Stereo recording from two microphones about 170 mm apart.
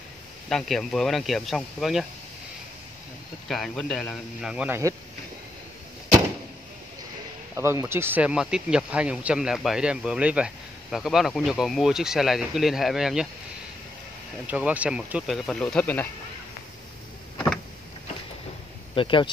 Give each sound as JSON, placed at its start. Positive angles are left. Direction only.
{"t": 0.5, "sound": "speech", "side_deg": 0}
{"t": 3.4, "sound": "speech", "side_deg": 0}
{"t": 7.5, "sound": "speech", "side_deg": -15}
{"t": 14.5, "sound": "speech", "side_deg": -10}
{"t": 18.9, "sound": "speech", "side_deg": 30}